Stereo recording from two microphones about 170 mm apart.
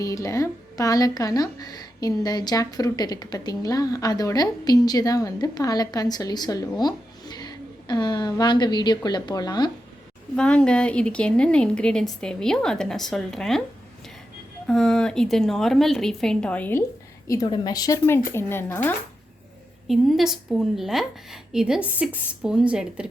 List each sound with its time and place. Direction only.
0.0 s speech: 20° left (ahead or behind)
10.3 s speech: 5° left (ahead or behind)
14.7 s speech: 5° left (ahead or behind)
17.2 s speech: 20° left (ahead or behind)
19.9 s speech: centre (ahead or behind)